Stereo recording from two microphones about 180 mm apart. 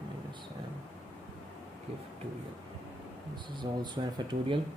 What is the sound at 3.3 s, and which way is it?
Speech, 25° right (ahead or behind).